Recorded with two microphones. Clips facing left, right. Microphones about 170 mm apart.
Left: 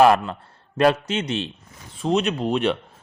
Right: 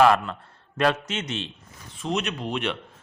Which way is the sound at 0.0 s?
35° left (ahead or behind).